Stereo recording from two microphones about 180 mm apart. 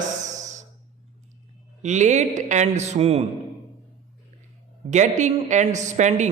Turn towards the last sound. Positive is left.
turn(degrees=-40)  # may be behind; listen again after turning